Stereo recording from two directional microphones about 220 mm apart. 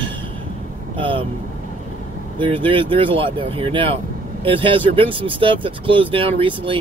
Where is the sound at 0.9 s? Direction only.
25° right (ahead or behind).